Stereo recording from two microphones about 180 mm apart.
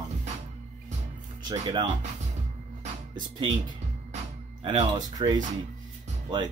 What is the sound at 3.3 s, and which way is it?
Speech, 30° right (ahead or behind).